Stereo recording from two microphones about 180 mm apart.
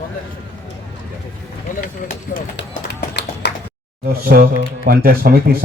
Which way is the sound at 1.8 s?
50° left (ahead or behind).